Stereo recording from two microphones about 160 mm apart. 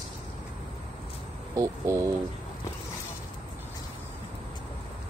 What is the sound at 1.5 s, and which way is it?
Speech, 20° right (ahead or behind).